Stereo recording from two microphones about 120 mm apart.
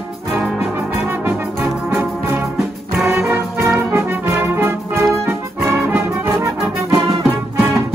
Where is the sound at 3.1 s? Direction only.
20° right (ahead or behind).